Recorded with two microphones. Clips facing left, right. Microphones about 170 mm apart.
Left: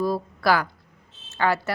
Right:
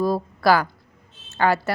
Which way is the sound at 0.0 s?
40° right (ahead or behind).